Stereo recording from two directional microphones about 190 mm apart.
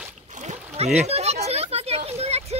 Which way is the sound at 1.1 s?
35° right (ahead or behind).